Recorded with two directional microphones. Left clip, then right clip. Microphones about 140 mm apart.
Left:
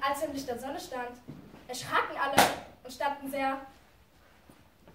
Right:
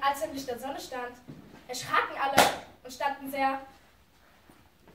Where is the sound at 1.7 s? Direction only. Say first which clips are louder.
Right 2 dB; 20° left (ahead or behind).